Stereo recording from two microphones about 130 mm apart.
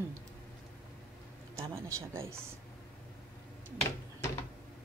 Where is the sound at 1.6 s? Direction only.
25° right (ahead or behind).